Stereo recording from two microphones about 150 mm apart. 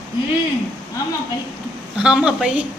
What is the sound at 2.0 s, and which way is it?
Speech, 5° right (ahead or behind).